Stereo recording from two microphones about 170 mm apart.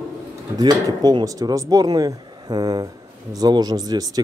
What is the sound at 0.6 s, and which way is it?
Speech, 25° right (ahead or behind).